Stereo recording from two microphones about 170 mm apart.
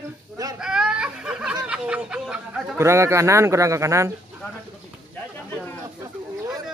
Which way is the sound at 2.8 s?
15° right (ahead or behind).